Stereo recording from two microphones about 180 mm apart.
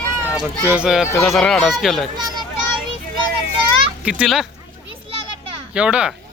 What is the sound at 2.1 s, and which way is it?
Speech, 25° right (ahead or behind).